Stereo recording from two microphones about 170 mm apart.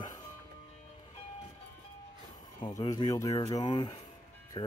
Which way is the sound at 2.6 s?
25° left (ahead or behind).